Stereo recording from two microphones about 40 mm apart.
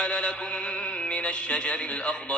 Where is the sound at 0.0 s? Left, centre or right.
Left.